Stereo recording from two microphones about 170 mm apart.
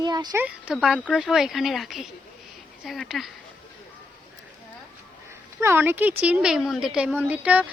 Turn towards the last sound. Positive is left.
turn(degrees=-10)  # may be behind; listen again after turning